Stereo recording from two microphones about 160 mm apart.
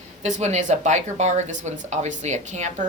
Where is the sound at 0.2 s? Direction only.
45° right (ahead or behind).